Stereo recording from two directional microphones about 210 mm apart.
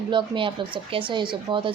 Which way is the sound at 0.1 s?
25° right (ahead or behind).